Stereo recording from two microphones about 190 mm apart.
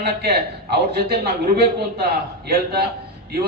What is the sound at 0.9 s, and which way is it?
A man's voice, 55° right (ahead or behind).